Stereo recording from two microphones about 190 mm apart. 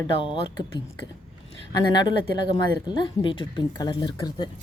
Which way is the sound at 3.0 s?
20° left (ahead or behind).